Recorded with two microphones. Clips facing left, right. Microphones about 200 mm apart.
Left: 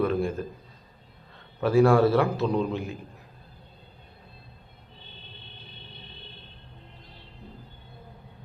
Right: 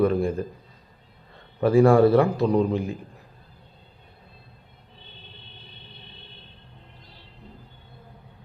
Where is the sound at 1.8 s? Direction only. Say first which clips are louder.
Right 4 dB; 15° right (ahead or behind).